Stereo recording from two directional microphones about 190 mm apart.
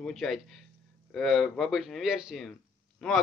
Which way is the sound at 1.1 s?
Centre (ahead or behind).